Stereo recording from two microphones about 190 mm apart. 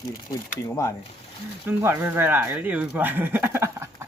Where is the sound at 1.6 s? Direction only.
15° right (ahead or behind).